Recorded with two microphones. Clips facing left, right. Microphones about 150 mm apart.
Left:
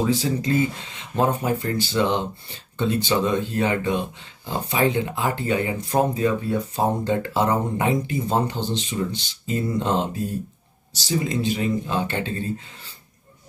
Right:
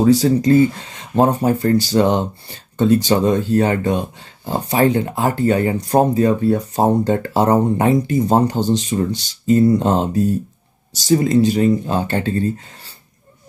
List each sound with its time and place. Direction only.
0.0 s speech: 40° right (ahead or behind)